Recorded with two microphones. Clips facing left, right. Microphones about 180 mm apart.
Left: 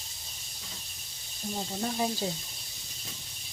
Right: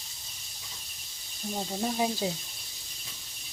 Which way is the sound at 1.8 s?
10° right (ahead or behind).